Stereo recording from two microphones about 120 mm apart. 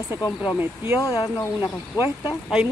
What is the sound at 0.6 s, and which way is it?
Speech, 20° right (ahead or behind).